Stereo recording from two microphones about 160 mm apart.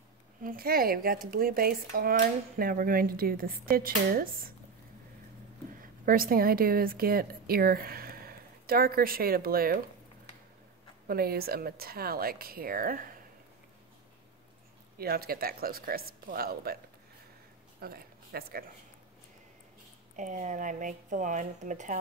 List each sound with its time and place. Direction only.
0.4 s speech: 65° right (ahead or behind)
5.8 s a woman's voice: 65° right (ahead or behind)
11.1 s speech: 70° right (ahead or behind)
15.0 s speech: 70° right (ahead or behind)
17.7 s speech: 75° right (ahead or behind)
20.2 s speech: 50° right (ahead or behind)